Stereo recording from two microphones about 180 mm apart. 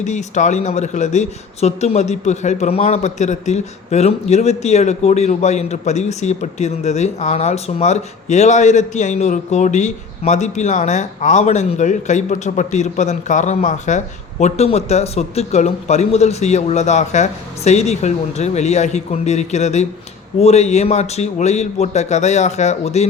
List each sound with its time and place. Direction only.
0.0 s speech: 40° left (ahead or behind)